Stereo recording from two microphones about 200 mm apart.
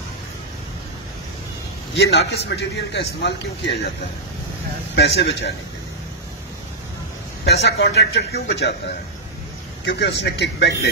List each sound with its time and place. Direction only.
2.0 s a man's voice: 55° left (ahead or behind)
4.9 s a man's voice: 55° left (ahead or behind)
7.6 s a man's voice: 60° left (ahead or behind)
9.8 s a man's voice: 60° left (ahead or behind)